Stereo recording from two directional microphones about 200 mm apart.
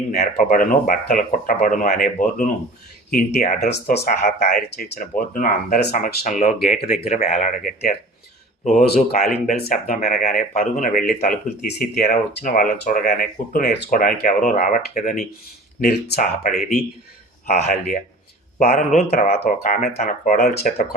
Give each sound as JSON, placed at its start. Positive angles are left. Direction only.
{"t": 0.1, "sound": "speech", "side_deg": 45}
{"t": 4.0, "sound": "speech", "side_deg": 35}
{"t": 9.1, "sound": "speech", "side_deg": 50}
{"t": 15.8, "sound": "speech", "side_deg": 50}
{"t": 16.1, "sound": "speech", "side_deg": 40}